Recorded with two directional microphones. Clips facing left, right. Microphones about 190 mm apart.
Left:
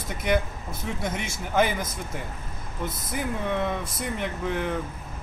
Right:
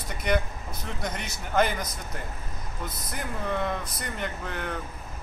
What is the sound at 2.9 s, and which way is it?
Speech, 25° left (ahead or behind).